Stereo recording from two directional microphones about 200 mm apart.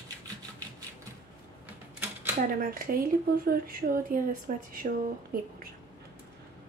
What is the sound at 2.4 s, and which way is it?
Speech, 45° right (ahead or behind).